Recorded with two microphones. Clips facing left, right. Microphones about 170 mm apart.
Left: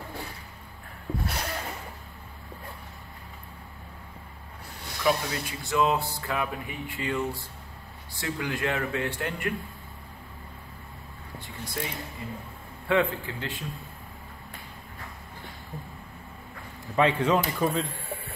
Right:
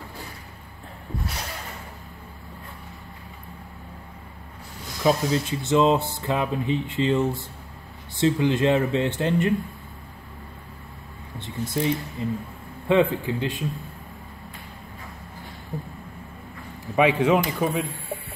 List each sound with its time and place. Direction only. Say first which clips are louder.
5.0 s speech: right 5 dB; 25° right (ahead or behind)
11.3 s speech: right 8 dB; 20° right (ahead or behind)
16.9 s a man's voice: right 4 dB; 10° right (ahead or behind)